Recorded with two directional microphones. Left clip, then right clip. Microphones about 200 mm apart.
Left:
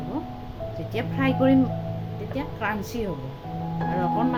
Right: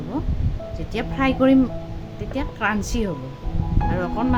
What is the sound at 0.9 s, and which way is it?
Speech, 15° right (ahead or behind).